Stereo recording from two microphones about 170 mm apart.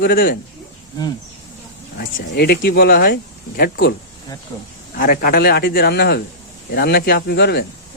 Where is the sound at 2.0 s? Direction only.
65° left (ahead or behind).